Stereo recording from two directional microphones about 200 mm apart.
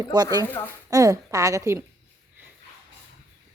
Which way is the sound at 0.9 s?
15° right (ahead or behind).